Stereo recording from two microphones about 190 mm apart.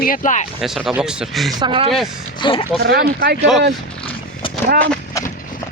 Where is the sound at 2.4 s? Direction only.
30° left (ahead or behind).